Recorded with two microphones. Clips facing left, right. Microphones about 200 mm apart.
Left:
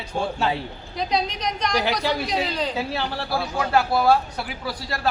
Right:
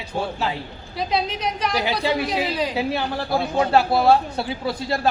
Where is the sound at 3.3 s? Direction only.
25° right (ahead or behind).